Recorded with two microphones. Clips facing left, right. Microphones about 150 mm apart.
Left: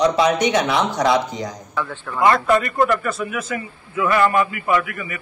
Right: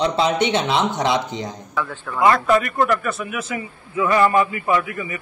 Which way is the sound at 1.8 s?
Centre (ahead or behind).